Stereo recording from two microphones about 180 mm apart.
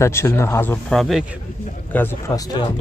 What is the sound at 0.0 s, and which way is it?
Speech, 15° left (ahead or behind).